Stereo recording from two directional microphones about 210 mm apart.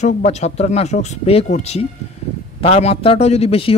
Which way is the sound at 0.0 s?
30° left (ahead or behind).